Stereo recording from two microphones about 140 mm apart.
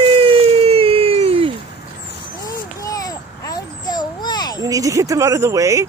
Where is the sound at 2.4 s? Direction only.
25° left (ahead or behind).